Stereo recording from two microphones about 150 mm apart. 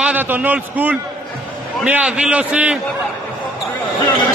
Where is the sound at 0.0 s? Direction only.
10° right (ahead or behind).